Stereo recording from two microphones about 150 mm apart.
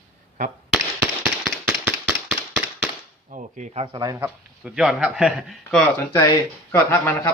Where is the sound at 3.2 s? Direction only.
55° right (ahead or behind).